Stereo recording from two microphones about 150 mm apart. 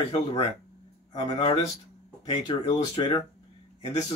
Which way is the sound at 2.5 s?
35° left (ahead or behind).